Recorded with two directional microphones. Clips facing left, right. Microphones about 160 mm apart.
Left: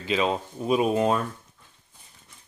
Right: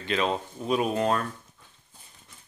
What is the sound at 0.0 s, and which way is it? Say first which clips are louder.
Speech: left 2 dB; 5° left (ahead or behind).